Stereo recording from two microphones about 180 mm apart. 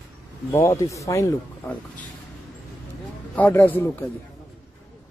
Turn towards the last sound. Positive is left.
turn(degrees=10)  # may be behind; listen again after turning